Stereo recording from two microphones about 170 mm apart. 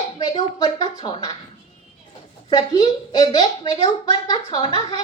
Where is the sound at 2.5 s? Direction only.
25° left (ahead or behind).